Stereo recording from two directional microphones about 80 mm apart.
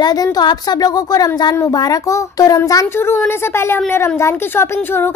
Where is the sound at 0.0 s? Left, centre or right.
Left.